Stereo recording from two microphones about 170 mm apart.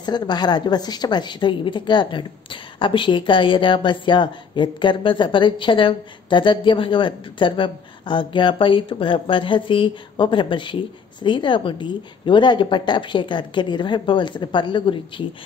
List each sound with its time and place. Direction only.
0.0 s a woman's voice: 25° left (ahead or behind)